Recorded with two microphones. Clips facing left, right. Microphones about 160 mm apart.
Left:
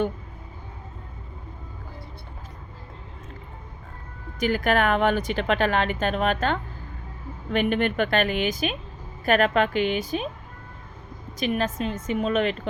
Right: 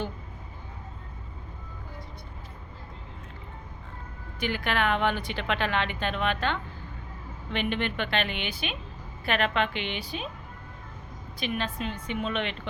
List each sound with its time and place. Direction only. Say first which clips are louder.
4.4 s speech: left 6 dB; 45° left (ahead or behind)
11.3 s a woman's voice: left 6 dB; 40° left (ahead or behind)